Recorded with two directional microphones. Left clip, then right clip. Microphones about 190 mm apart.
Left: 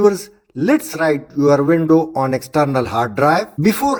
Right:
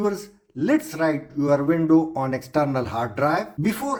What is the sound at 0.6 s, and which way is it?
Speech, 40° left (ahead or behind).